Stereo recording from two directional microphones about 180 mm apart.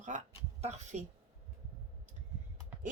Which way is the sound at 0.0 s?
45° right (ahead or behind).